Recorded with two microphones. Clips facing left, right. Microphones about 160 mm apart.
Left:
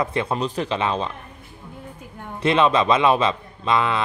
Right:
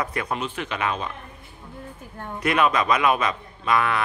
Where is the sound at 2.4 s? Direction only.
25° left (ahead or behind).